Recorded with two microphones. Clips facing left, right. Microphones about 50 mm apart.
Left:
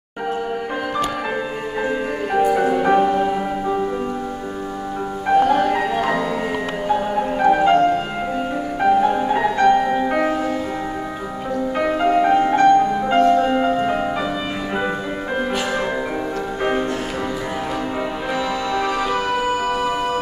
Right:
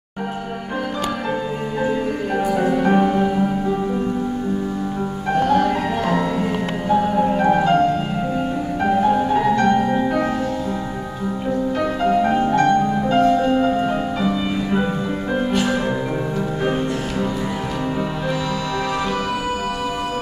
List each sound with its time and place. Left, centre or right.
2.3 s music: centre
5.3 s music: centre
8.8 s music: centre
11.8 s music: centre